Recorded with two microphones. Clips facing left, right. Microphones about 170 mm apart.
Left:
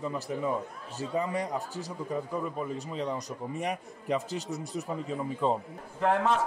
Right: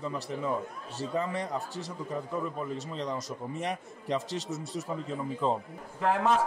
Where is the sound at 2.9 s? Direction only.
5° left (ahead or behind).